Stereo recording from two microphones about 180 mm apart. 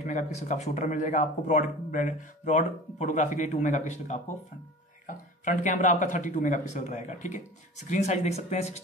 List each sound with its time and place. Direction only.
0.0 s speech: 40° left (ahead or behind)